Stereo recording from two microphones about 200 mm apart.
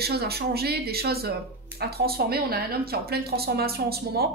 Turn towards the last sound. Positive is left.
turn(degrees=-50)  # may be behind; listen again after turning